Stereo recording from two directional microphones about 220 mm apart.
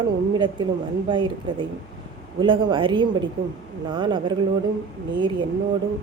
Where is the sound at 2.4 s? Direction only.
20° right (ahead or behind).